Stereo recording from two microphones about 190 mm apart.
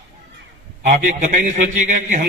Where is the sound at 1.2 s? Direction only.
40° right (ahead or behind).